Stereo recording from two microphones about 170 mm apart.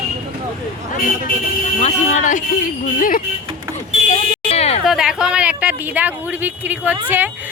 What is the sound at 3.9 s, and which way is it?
Buzzer, 40° left (ahead or behind).